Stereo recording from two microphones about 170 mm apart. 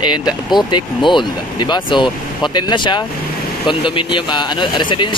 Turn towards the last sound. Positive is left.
turn(degrees=30)  # may be behind; listen again after turning